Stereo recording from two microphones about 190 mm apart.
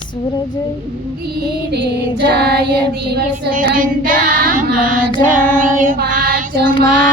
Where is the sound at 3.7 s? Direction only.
45° right (ahead or behind).